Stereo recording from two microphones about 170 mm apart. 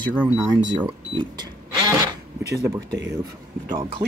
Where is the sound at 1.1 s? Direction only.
25° right (ahead or behind).